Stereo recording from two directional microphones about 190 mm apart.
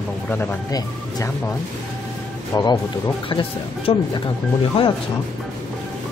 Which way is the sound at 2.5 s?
20° left (ahead or behind).